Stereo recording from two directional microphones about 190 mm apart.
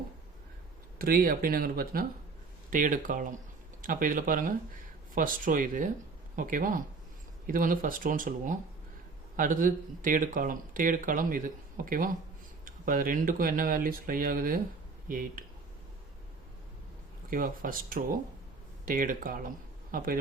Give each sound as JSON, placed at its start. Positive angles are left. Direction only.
{"t": 0.9, "sound": "speech", "side_deg": -50}
{"t": 17.2, "sound": "speech", "side_deg": -45}